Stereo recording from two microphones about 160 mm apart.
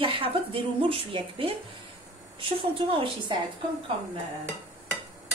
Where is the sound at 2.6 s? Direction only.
35° right (ahead or behind).